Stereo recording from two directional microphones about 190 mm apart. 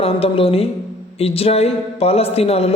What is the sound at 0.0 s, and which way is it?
A woman's voice, 30° left (ahead or behind).